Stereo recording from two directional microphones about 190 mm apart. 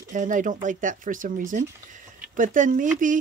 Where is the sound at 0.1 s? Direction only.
40° right (ahead or behind).